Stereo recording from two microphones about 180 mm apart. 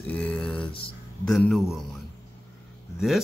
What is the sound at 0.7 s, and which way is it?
Speech, 30° left (ahead or behind).